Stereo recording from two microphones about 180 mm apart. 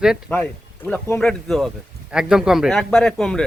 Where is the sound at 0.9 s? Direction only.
5° left (ahead or behind).